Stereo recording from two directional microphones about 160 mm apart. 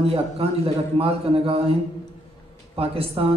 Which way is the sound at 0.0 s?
40° right (ahead or behind).